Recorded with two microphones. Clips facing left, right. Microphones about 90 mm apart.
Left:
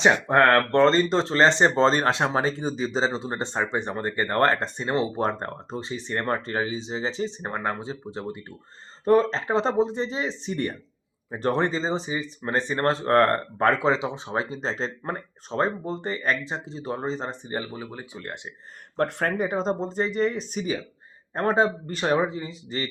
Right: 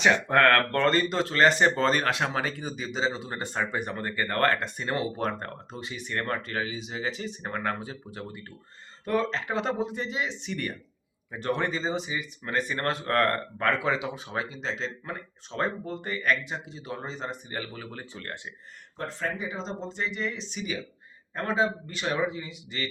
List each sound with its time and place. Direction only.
0.0 s speech: 25° left (ahead or behind)
9.0 s speech: 35° left (ahead or behind)
17.9 s speech: 15° left (ahead or behind)
18.9 s speech: 60° left (ahead or behind); by 22.9 s 35° left (ahead or behind)